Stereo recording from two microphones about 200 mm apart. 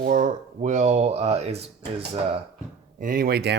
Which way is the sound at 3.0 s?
45° right (ahead or behind).